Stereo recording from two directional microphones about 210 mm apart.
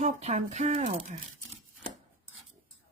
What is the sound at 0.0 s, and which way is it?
Speech, 30° right (ahead or behind).